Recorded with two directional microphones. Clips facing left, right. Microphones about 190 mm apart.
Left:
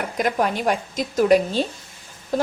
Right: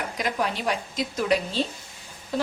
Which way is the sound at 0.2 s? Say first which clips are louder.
Left 6 dB; 50° left (ahead or behind).